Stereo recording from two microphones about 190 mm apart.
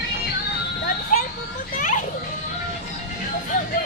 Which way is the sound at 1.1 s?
45° left (ahead or behind).